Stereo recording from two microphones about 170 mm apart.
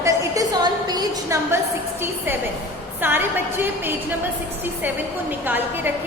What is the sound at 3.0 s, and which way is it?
Speech, 15° right (ahead or behind).